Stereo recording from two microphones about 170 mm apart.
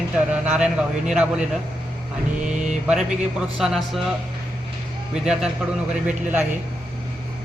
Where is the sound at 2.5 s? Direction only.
45° right (ahead or behind).